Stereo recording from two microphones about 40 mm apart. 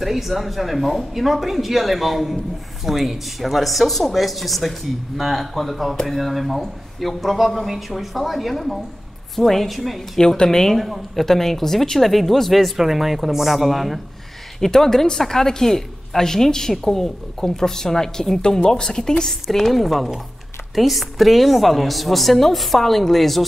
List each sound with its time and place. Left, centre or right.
0.0 s speech: centre
10.3 s a woman's voice: centre
10.8 s speech: centre
14.6 s a woman's voice: centre
19.5 s speech: centre